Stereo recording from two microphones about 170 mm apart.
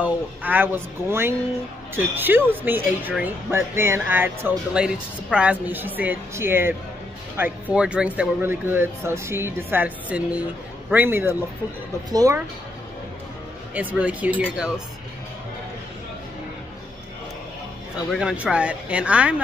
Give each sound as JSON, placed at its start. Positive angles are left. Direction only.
{"t": 0.0, "sound": "speech", "side_deg": -10}
{"t": 13.7, "sound": "speech", "side_deg": -10}
{"t": 18.1, "sound": "speech", "side_deg": -5}